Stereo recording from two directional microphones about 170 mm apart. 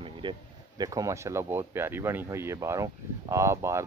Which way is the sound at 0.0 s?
30° right (ahead or behind).